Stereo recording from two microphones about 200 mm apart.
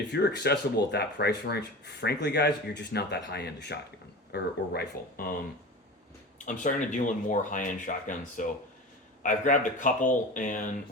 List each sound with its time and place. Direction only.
0.1 s speech: 55° left (ahead or behind)
6.4 s speech: 40° left (ahead or behind)